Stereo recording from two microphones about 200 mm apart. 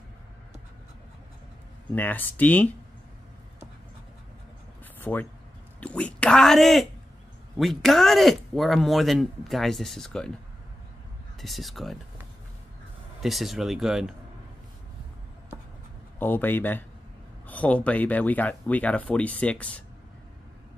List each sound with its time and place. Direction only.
2.0 s speech: 10° left (ahead or behind)
5.0 s speech: 10° left (ahead or behind)
11.4 s speech: centre (ahead or behind)
13.2 s speech: centre (ahead or behind)
16.2 s speech: 10° left (ahead or behind)